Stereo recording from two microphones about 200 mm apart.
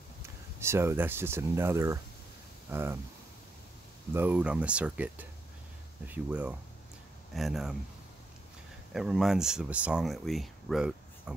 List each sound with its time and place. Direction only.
0.6 s speech: 15° right (ahead or behind)
4.1 s speech: 10° right (ahead or behind)
8.9 s speech: centre (ahead or behind)